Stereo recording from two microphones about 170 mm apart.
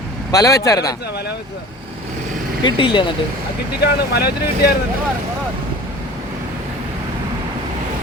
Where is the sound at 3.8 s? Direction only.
70° left (ahead or behind).